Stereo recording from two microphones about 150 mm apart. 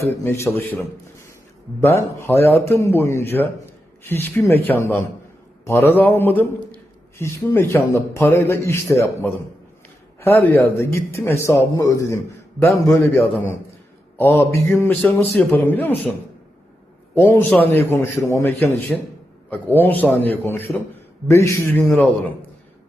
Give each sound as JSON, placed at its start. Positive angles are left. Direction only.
{"t": 0.0, "sound": "a man's voice", "side_deg": 20}
{"t": 17.2, "sound": "a man's voice", "side_deg": 15}